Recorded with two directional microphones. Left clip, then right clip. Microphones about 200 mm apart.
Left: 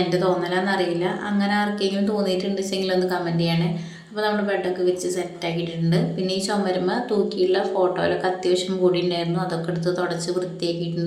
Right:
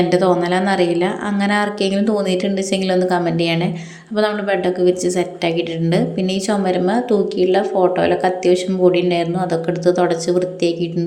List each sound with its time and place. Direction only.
0.1 s a woman's voice: 40° right (ahead or behind)